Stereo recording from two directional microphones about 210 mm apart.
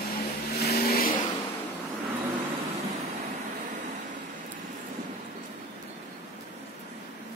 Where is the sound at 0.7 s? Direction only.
45° left (ahead or behind).